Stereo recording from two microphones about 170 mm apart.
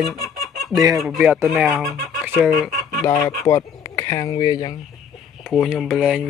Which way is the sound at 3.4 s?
20° left (ahead or behind).